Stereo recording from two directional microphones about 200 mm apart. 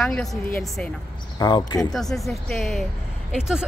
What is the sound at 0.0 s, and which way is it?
Speech, centre (ahead or behind).